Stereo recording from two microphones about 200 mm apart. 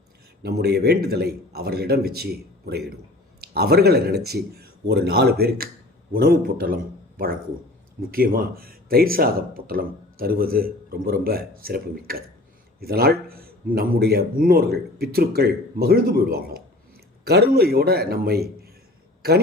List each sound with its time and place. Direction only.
0.4 s speech: 55° right (ahead or behind)
8.1 s speech: 45° right (ahead or behind)